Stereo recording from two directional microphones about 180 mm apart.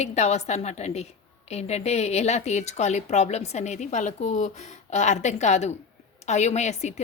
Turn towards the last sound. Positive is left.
turn(degrees=40)  # may be behind; listen again after turning